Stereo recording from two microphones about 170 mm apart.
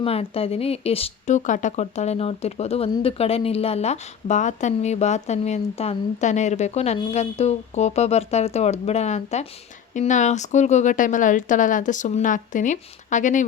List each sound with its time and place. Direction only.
0.0 s speech: 35° left (ahead or behind)